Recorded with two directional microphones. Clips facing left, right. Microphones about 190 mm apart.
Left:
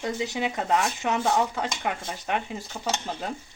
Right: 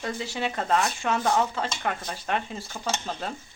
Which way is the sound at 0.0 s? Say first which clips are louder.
Left 2 dB; 20° left (ahead or behind).